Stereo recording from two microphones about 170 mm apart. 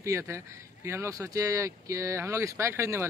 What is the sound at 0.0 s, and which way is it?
Speech, 15° right (ahead or behind).